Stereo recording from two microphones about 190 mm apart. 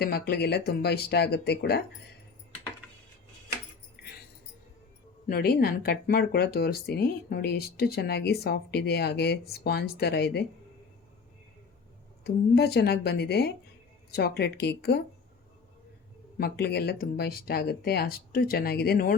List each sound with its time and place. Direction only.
0.0 s speech: 55° left (ahead or behind)
4.0 s music: 50° left (ahead or behind)
5.2 s speech: 55° left (ahead or behind)
12.2 s speech: 60° left (ahead or behind)
16.4 s speech: 60° left (ahead or behind)